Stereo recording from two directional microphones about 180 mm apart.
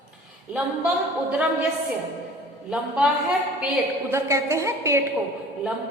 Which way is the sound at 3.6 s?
10° right (ahead or behind).